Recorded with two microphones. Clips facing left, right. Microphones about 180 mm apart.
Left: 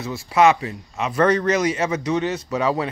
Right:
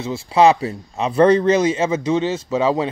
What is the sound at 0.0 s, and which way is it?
A man's voice, 25° right (ahead or behind).